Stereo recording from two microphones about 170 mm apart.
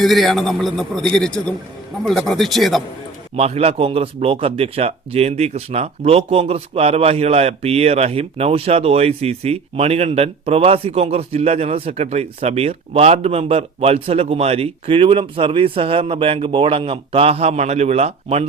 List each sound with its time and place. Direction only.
0.0 s a man's voice: centre (ahead or behind)
3.3 s speech: 35° right (ahead or behind)